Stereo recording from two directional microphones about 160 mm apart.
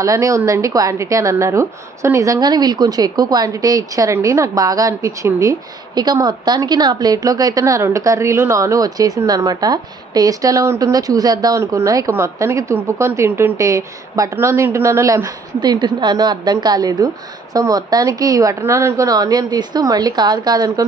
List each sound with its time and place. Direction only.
0.0 s a woman's voice: 20° right (ahead or behind)